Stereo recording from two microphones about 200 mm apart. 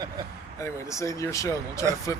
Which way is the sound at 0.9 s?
15° left (ahead or behind).